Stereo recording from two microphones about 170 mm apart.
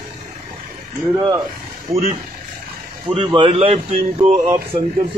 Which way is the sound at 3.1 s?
30° right (ahead or behind).